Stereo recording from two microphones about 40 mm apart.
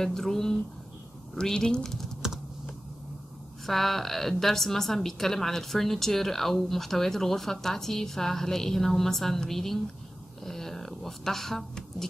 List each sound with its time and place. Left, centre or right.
0.0 s a woman's voice: centre
1.8 s a woman's voice: centre
3.6 s a woman's voice: centre